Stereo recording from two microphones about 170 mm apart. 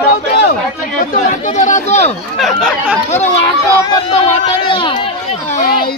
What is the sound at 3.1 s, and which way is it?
Speech, 40° left (ahead or behind).